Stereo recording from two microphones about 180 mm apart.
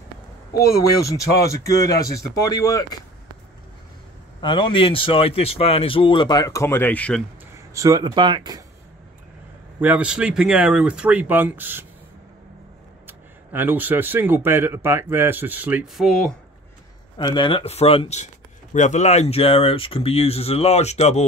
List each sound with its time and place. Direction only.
0.6 s speech: 20° left (ahead or behind)
4.4 s speech: 25° left (ahead or behind); by 7.2 s 5° left (ahead or behind)
7.7 s speech: 20° right (ahead or behind)
9.8 s speech: 10° right (ahead or behind)
13.0 s speech: 10° right (ahead or behind)
17.2 s speech: 25° left (ahead or behind)